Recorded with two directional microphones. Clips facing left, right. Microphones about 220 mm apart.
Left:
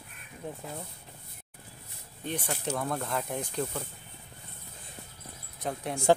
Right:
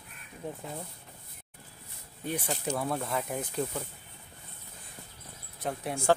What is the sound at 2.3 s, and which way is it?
Speech, 10° right (ahead or behind).